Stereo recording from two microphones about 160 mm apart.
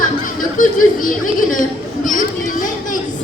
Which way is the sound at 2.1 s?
55° left (ahead or behind).